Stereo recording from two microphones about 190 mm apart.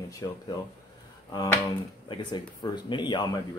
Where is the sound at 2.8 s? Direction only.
25° left (ahead or behind).